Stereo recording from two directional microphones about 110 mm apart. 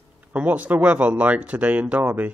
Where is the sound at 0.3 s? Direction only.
15° right (ahead or behind).